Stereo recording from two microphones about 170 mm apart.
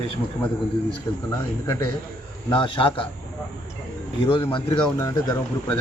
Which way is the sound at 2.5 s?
30° left (ahead or behind).